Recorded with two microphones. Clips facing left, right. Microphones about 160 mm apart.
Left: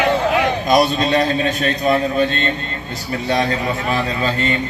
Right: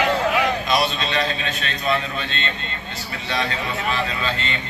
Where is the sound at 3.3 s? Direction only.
40° left (ahead or behind).